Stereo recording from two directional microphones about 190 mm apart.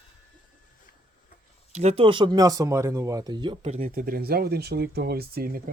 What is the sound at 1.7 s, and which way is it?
Speech, 35° right (ahead or behind).